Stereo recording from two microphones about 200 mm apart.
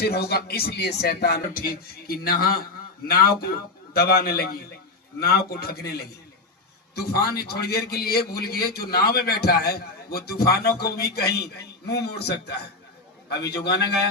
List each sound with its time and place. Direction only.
0.0 s a man's voice: 55° left (ahead or behind)
3.9 s a man's voice: 50° left (ahead or behind)